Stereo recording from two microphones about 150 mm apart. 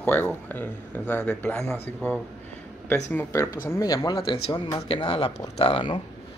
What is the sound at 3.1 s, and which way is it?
Speech, 20° left (ahead or behind).